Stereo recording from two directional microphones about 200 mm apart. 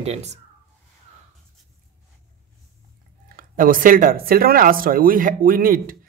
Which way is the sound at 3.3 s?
45° right (ahead or behind).